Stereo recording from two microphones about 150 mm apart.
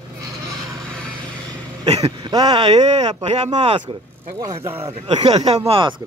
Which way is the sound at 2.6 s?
45° right (ahead or behind).